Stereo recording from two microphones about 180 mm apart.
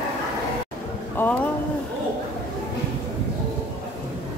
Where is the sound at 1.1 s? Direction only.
10° left (ahead or behind).